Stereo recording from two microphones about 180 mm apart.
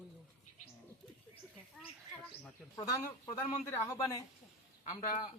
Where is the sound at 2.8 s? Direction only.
15° left (ahead or behind).